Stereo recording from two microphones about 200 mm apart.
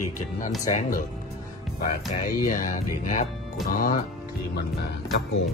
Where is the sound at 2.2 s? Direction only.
45° left (ahead or behind).